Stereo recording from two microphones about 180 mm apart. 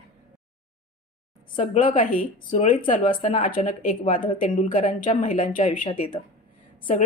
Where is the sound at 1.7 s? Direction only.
45° left (ahead or behind).